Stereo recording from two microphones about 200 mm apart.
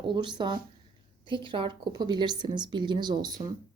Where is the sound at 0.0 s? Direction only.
25° right (ahead or behind).